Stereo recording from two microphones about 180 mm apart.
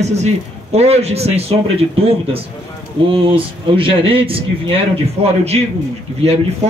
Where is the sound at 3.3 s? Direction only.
30° right (ahead or behind).